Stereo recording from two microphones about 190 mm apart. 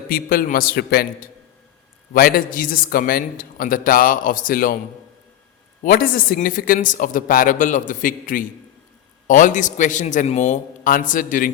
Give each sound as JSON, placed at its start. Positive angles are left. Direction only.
{"t": 0.1, "sound": "a man's voice", "side_deg": 50}
{"t": 5.8, "sound": "a man's voice", "side_deg": 50}